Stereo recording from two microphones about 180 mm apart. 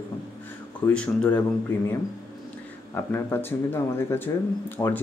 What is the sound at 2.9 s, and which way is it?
Speech, 15° left (ahead or behind).